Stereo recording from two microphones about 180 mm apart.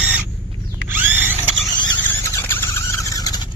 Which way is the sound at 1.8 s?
15° left (ahead or behind).